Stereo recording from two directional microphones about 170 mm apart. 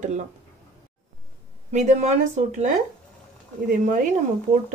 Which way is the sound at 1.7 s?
40° right (ahead or behind).